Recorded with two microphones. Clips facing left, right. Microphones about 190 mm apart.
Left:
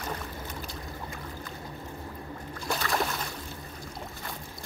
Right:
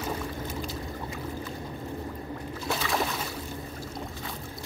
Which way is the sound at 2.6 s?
Centre (ahead or behind).